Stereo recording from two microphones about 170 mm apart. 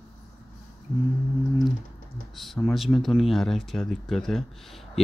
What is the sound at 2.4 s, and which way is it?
Speech, centre (ahead or behind).